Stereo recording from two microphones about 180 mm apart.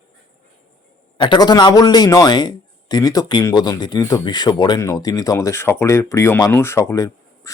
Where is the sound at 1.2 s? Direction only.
25° left (ahead or behind).